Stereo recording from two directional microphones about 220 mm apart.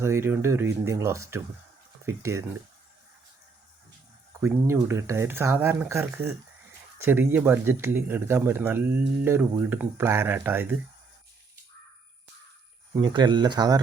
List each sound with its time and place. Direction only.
0.0 s speech: 10° right (ahead or behind)
4.4 s speech: 10° right (ahead or behind)
12.9 s speech: 20° right (ahead or behind)